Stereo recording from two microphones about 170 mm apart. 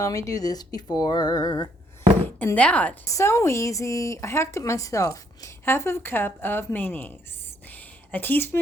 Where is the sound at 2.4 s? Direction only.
10° left (ahead or behind).